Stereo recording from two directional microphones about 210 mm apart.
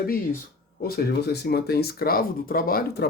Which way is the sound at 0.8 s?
50° left (ahead or behind).